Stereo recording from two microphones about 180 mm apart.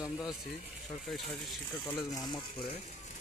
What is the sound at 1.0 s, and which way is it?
Speech, centre (ahead or behind).